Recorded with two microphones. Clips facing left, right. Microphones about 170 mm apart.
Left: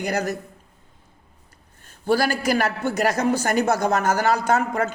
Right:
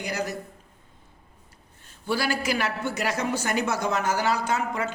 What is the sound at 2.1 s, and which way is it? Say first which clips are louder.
A woman's voice: left 6 dB; 45° left (ahead or behind).